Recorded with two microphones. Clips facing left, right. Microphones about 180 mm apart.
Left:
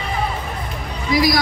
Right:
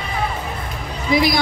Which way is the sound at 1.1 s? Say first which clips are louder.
Even; 25° right (ahead or behind).